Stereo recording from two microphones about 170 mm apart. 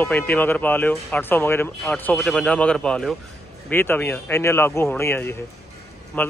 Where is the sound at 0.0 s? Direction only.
10° left (ahead or behind).